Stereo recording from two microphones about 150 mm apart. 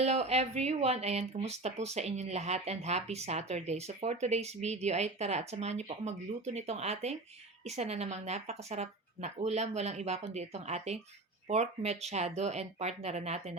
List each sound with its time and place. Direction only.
0.0 s speech: 45° right (ahead or behind)